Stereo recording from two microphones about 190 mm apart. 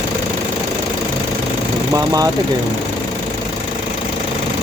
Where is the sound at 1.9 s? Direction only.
20° right (ahead or behind).